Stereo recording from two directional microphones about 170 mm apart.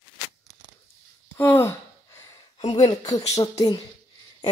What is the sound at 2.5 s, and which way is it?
A woman's voice, 30° left (ahead or behind).